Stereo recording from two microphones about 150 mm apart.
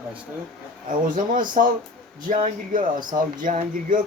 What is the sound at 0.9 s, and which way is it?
Speech, 65° right (ahead or behind).